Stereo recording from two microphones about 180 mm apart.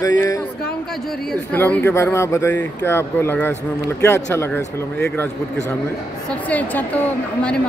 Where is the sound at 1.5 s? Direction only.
10° left (ahead or behind).